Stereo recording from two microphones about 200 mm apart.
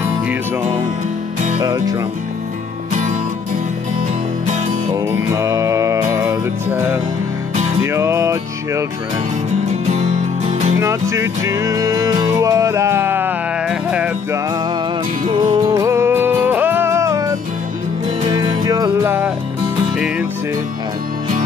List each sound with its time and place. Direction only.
1.6 s speech: 20° right (ahead or behind)
2.9 s music: 35° right (ahead or behind)
4.9 s music: 15° right (ahead or behind)
9.8 s music: 35° right (ahead or behind)
10.8 s music: 15° right (ahead or behind)
15.5 s music: 15° right (ahead or behind)